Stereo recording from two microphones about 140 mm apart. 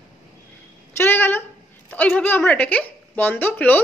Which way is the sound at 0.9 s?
15° left (ahead or behind).